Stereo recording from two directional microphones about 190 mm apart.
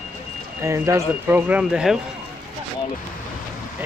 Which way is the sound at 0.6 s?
15° right (ahead or behind).